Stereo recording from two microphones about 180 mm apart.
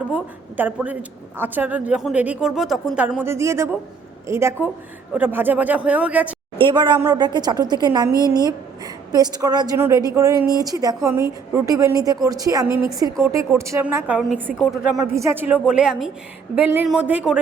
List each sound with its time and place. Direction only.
0.1 s a woman's voice: 10° right (ahead or behind)
6.6 s a woman's voice: 25° right (ahead or behind); by 14.9 s centre (ahead or behind)
15.1 s a woman's voice: 15° right (ahead or behind)